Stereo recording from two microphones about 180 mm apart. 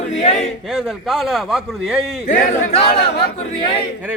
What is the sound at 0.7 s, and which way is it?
Speech, centre (ahead or behind).